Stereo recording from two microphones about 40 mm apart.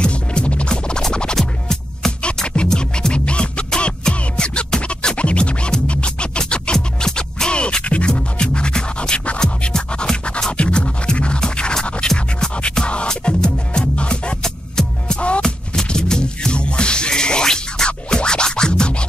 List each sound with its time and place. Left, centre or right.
0.0 s music: left
15.1 s music: left
15.4 s music: centre